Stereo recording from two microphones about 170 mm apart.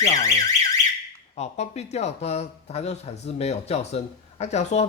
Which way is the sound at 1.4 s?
40° left (ahead or behind).